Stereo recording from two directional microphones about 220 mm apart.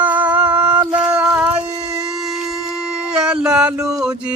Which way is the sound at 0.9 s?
5° right (ahead or behind).